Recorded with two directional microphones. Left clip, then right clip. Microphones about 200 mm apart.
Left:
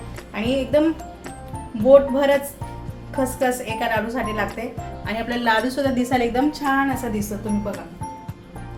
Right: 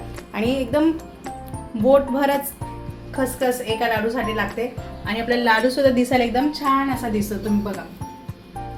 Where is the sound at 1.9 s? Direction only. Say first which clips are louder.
Left 3 dB; 25° right (ahead or behind).